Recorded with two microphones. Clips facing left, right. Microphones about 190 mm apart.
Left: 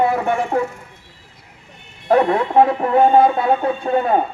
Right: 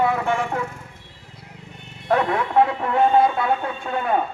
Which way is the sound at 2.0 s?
25° left (ahead or behind).